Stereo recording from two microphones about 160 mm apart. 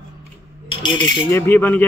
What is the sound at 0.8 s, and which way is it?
Speech, 30° left (ahead or behind).